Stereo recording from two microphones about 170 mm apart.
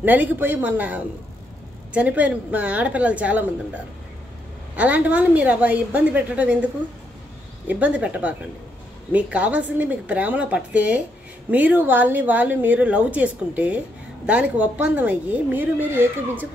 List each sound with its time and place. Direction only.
0.0 s a woman's voice: 10° right (ahead or behind)